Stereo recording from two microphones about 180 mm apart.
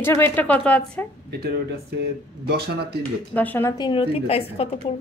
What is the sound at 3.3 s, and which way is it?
Speech, 10° left (ahead or behind).